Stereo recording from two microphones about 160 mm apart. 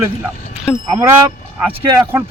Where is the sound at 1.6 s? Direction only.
15° right (ahead or behind).